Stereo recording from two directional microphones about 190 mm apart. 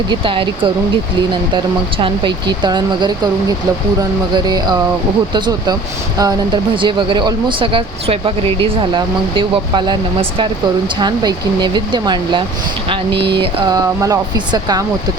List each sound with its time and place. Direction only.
0.1 s speech: 25° right (ahead or behind)
4.4 s speech: 20° right (ahead or behind)